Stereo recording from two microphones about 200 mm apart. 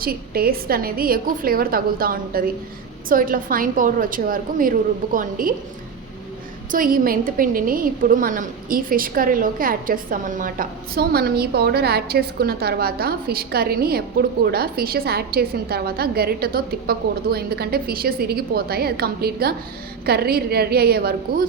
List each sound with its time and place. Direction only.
0.0 s a woman's voice: 50° right (ahead or behind)
6.7 s a woman's voice: 45° right (ahead or behind)